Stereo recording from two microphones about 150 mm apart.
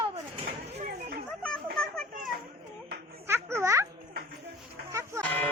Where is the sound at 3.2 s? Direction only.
15° right (ahead or behind).